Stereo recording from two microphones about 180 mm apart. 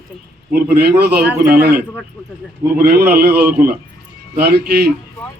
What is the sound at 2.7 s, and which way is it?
A man's voice, 60° right (ahead or behind).